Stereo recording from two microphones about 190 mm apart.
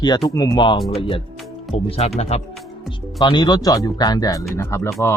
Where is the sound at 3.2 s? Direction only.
25° left (ahead or behind).